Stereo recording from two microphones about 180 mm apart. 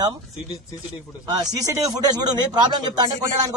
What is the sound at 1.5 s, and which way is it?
Speech, 20° right (ahead or behind).